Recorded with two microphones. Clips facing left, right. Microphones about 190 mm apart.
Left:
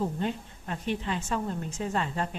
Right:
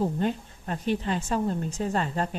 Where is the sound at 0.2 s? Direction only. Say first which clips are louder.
Right 4 dB; 40° right (ahead or behind).